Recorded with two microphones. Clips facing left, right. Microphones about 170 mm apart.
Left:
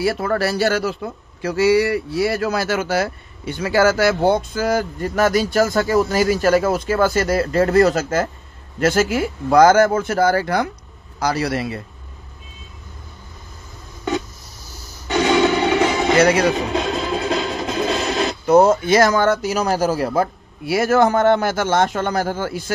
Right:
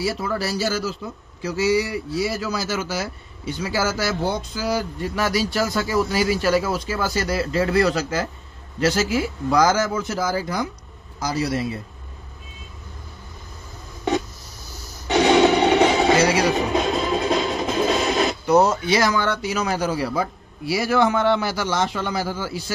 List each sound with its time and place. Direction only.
0.0 s speech: 60° left (ahead or behind)
15.4 s a sound: 35° right (ahead or behind)
16.2 s speech: 55° left (ahead or behind)
16.7 s music: centre (ahead or behind)
18.5 s speech: 50° left (ahead or behind)